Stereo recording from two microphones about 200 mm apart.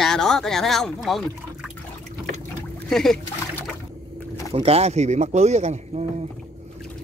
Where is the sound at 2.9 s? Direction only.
5° left (ahead or behind).